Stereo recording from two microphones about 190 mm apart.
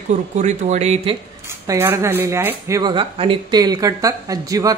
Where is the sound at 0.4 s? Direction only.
35° right (ahead or behind).